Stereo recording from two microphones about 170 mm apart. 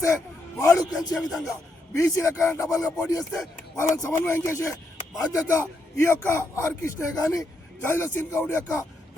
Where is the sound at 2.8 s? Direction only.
20° left (ahead or behind).